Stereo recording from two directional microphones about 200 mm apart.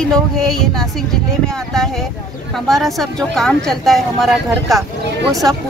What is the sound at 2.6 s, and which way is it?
Speech, centre (ahead or behind).